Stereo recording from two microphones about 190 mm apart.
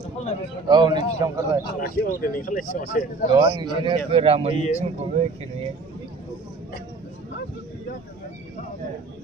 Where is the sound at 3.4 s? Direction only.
25° right (ahead or behind).